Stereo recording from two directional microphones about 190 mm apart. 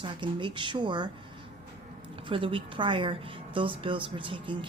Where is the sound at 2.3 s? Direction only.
25° right (ahead or behind).